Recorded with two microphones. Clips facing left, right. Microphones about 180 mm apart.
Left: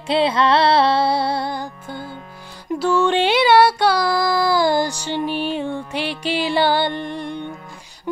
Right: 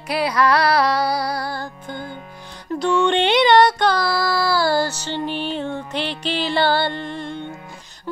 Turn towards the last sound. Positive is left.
turn(degrees=15)  # may be behind; listen again after turning